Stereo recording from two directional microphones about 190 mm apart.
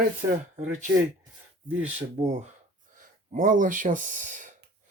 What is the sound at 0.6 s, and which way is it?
Speech, 40° right (ahead or behind).